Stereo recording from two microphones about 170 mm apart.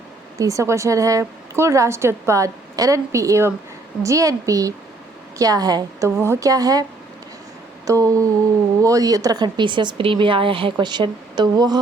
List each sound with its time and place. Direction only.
0.3 s a woman's voice: 20° right (ahead or behind)
7.9 s speech: 20° right (ahead or behind)